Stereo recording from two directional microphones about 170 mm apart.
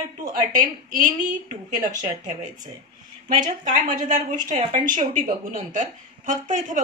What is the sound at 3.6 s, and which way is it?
A woman's voice, 50° right (ahead or behind).